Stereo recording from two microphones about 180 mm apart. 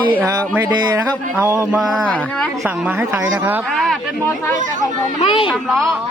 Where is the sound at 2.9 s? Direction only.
10° right (ahead or behind).